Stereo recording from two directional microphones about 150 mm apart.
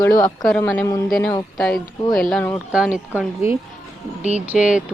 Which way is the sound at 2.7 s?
10° right (ahead or behind).